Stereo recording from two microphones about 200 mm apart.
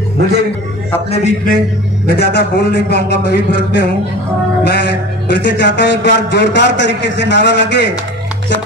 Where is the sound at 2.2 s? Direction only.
55° left (ahead or behind).